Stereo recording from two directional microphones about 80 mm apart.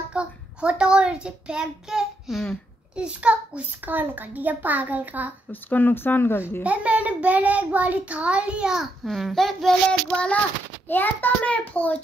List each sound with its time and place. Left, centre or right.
0.1 s a child's voice: centre
3.0 s a child's voice: centre
5.5 s a child's voice: left
6.6 s a child's voice: centre
9.0 s a child's voice: centre
10.1 s a child's voice: centre